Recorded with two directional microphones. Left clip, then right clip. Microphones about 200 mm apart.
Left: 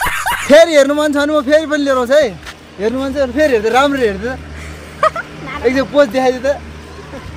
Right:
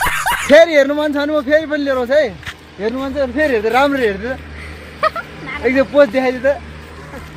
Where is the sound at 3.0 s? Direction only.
10° right (ahead or behind).